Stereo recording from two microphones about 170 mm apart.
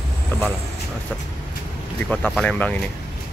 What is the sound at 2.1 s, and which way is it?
Speech, 5° left (ahead or behind).